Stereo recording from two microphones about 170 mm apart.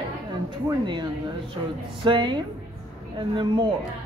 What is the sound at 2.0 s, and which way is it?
Speech, 30° right (ahead or behind).